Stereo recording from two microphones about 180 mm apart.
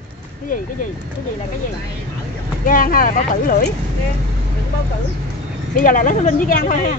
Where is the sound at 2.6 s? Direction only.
50° left (ahead or behind).